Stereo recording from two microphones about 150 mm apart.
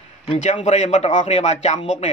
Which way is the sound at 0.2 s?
40° left (ahead or behind).